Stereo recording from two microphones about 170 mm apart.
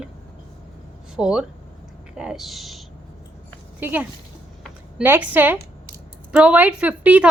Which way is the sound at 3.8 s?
10° right (ahead or behind).